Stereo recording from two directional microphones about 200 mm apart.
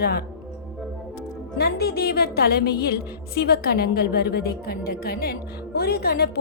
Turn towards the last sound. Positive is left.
turn(degrees=50)  # may be behind; listen again after turning